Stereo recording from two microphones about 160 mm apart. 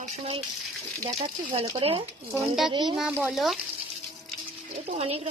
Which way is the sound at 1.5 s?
35° right (ahead or behind).